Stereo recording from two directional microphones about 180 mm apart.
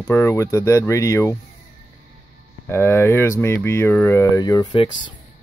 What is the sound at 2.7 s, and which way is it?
Speech, 15° left (ahead or behind).